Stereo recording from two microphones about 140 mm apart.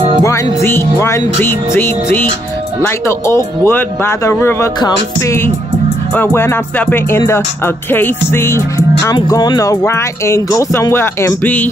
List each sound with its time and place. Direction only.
0.7 s music: 20° left (ahead or behind)